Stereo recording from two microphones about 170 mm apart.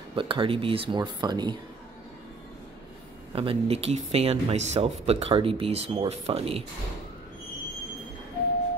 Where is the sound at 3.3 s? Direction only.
35° right (ahead or behind).